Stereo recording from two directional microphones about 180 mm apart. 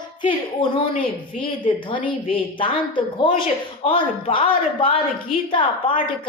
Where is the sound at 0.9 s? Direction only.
30° left (ahead or behind).